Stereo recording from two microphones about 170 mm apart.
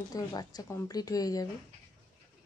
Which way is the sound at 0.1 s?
20° left (ahead or behind).